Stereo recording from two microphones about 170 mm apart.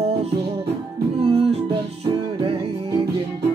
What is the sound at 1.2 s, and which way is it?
Music, 35° right (ahead or behind).